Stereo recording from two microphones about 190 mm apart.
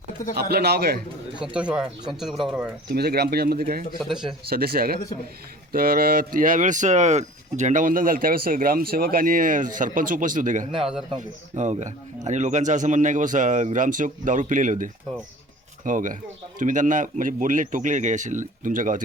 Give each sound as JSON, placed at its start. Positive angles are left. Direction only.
{"t": 0.3, "sound": "speech", "side_deg": -55}
{"t": 1.7, "sound": "speech", "side_deg": -5}
{"t": 2.9, "sound": "speech", "side_deg": -55}
{"t": 4.1, "sound": "speech", "side_deg": -5}
{"t": 4.4, "sound": "speech", "side_deg": -55}
{"t": 10.7, "sound": "speech", "side_deg": -5}
{"t": 11.2, "sound": "speech", "side_deg": -40}